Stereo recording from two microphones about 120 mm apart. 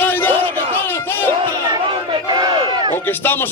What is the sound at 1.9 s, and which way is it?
Run, 40° right (ahead or behind).